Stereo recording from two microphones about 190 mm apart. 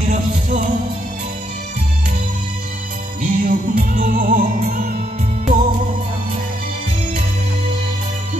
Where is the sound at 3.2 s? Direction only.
45° right (ahead or behind).